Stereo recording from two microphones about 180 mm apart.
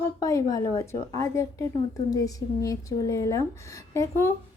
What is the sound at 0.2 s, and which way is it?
Speech, 15° left (ahead or behind).